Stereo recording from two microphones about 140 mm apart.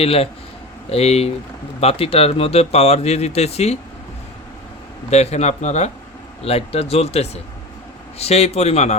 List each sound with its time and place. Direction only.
0.0 s speech: 45° left (ahead or behind)
5.1 s speech: 50° left (ahead or behind)